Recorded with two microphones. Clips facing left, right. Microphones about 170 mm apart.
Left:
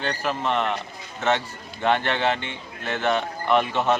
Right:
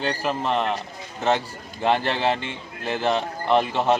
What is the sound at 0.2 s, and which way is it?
Speech, 35° right (ahead or behind).